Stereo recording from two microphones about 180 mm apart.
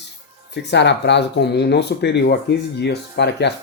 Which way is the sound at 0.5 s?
70° left (ahead or behind).